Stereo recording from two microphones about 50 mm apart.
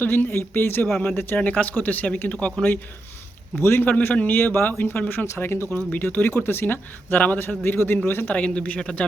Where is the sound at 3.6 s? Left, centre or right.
Left.